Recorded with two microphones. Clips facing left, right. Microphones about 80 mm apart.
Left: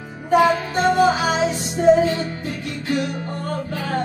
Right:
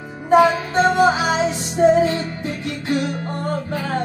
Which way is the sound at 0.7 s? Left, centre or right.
Right.